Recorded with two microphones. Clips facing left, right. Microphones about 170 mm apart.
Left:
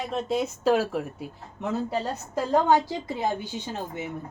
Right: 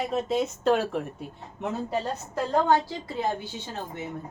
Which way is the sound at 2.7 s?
20° left (ahead or behind).